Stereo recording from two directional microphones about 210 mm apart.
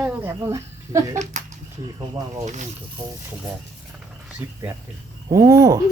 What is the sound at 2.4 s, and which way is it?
Speech, 35° right (ahead or behind).